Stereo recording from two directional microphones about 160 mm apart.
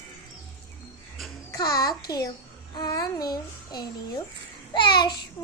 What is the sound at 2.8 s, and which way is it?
Child singing, 25° left (ahead or behind).